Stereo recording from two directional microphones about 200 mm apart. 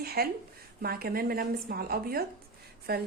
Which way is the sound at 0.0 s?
50° right (ahead or behind).